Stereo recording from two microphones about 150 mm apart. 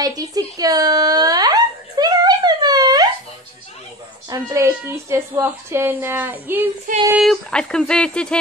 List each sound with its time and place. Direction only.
0.0 s a sound: 25° right (ahead or behind)
4.3 s a woman's voice: 20° right (ahead or behind)
7.2 s speech: 5° left (ahead or behind)